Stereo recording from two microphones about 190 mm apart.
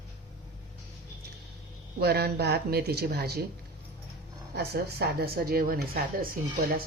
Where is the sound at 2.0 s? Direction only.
55° right (ahead or behind).